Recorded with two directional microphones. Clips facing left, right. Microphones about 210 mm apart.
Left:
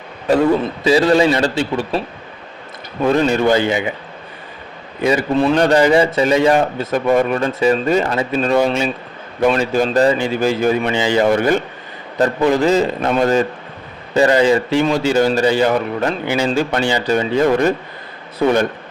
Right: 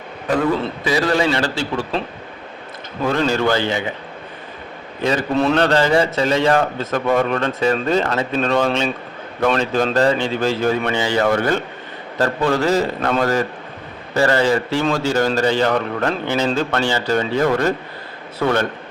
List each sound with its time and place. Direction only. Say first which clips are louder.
0.9 s a man's voice: left 6 dB; 25° left (ahead or behind)
3.1 s a man's voice: left 4 dB; 20° left (ahead or behind)
5.0 s a man's voice: left 3 dB; 5° left (ahead or behind)